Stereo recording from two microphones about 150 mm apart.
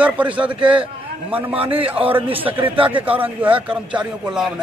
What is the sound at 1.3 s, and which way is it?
A man's voice, 40° right (ahead or behind).